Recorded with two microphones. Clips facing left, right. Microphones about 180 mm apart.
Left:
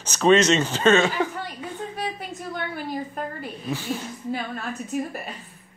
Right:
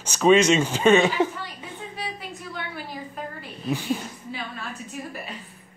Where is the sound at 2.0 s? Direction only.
50° left (ahead or behind).